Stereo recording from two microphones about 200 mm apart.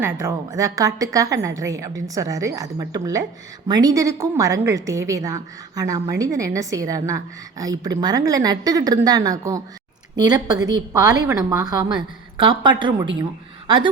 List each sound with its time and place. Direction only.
0.0 s a woman's voice: 15° right (ahead or behind)